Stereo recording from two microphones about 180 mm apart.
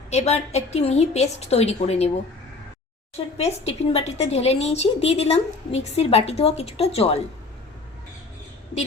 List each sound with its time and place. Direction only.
0.1 s a woman's voice: 35° left (ahead or behind)
3.3 s a woman's voice: 35° left (ahead or behind)